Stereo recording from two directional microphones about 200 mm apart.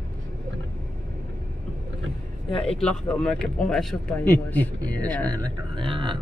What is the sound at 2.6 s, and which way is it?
Speech, 5° left (ahead or behind).